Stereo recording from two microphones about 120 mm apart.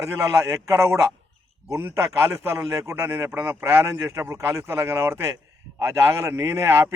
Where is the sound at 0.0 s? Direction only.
25° right (ahead or behind).